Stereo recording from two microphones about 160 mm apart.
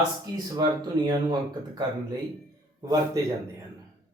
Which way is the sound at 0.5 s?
25° right (ahead or behind).